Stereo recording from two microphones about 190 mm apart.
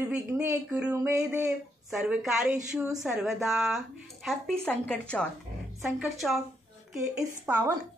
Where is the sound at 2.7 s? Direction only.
15° right (ahead or behind).